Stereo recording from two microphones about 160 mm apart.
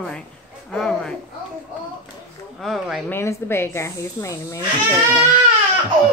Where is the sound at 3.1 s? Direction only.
15° left (ahead or behind).